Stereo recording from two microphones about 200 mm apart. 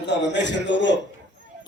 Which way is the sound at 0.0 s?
60° left (ahead or behind).